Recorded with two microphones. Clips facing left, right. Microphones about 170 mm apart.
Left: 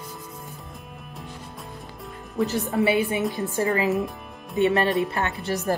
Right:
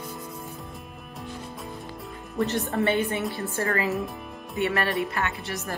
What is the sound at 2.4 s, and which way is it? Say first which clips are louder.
A woman's voice: left 2 dB; centre (ahead or behind).